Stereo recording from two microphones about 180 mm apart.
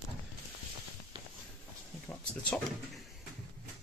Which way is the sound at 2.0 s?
5° left (ahead or behind).